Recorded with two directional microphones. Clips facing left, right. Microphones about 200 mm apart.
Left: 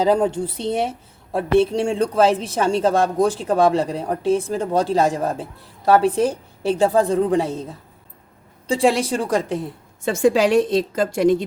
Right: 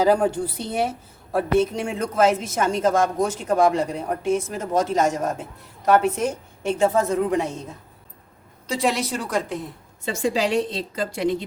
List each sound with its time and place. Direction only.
0.0 s a woman's voice: 25° left (ahead or behind)
8.6 s a woman's voice: 30° left (ahead or behind)
10.1 s speech: 50° left (ahead or behind)